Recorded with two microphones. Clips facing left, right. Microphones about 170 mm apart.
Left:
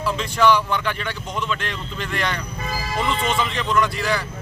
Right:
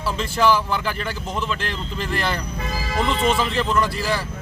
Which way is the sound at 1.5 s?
35° right (ahead or behind).